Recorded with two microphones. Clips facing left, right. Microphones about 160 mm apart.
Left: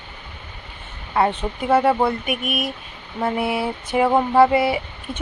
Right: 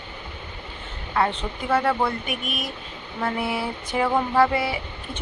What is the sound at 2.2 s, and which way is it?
Speech, 10° left (ahead or behind).